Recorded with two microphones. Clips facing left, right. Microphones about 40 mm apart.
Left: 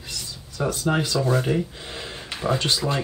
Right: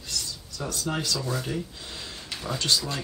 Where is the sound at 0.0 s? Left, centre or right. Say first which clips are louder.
Even; left.